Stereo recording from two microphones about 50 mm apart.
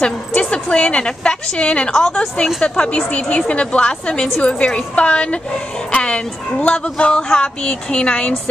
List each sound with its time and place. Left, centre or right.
0.0 s a woman's voice: left